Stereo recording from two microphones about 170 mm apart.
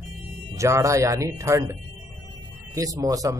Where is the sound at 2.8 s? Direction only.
20° right (ahead or behind).